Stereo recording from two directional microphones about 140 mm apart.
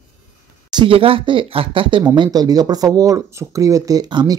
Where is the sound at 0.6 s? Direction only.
35° right (ahead or behind).